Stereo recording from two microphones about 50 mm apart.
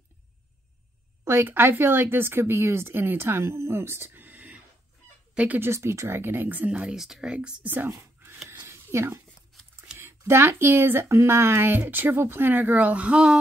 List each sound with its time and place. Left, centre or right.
1.2 s speech: right
4.1 s whispering: right
5.6 s speech: right
6.2 s speech: right
6.7 s speech: right
7.0 s speech: centre
7.2 s speech: right
7.6 s speech: right
8.5 s a sound: right
9.9 s speech: right